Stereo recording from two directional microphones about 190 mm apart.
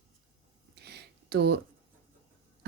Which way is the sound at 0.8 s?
60° right (ahead or behind).